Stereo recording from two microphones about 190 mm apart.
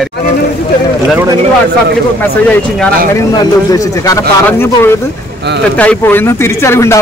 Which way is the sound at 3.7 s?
20° left (ahead or behind).